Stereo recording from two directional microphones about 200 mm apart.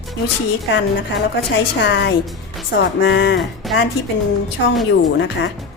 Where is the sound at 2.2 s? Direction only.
Centre (ahead or behind).